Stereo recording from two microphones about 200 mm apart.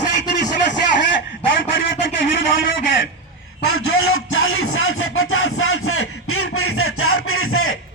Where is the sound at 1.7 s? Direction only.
45° left (ahead or behind).